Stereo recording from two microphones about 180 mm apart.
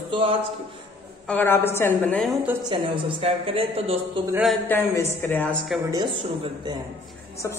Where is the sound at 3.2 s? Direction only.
30° right (ahead or behind).